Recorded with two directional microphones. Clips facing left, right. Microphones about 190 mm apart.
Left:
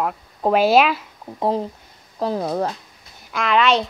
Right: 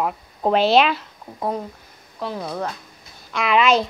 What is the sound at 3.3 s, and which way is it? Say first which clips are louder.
Speech: even; 5° right (ahead or behind).